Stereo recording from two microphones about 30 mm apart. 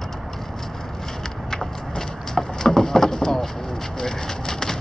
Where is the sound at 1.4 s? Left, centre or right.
Centre.